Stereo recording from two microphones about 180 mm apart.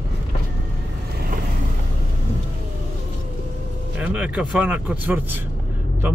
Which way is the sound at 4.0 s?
5° right (ahead or behind).